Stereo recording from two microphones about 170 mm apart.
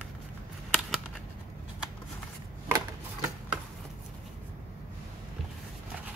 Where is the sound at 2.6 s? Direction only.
15° right (ahead or behind).